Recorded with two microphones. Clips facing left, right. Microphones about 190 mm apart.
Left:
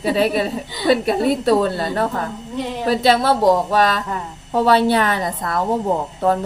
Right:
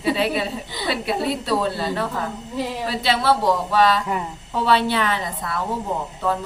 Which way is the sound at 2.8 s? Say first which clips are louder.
Left 6 dB; 45° left (ahead or behind).